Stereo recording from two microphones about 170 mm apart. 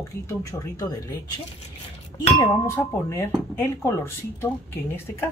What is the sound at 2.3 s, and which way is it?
Speech, 20° left (ahead or behind).